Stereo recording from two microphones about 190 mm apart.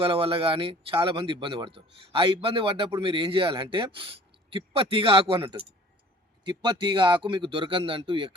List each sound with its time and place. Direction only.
0.0 s speech: 30° right (ahead or behind)